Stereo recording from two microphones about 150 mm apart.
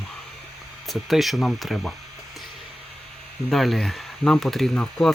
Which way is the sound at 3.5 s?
Centre (ahead or behind).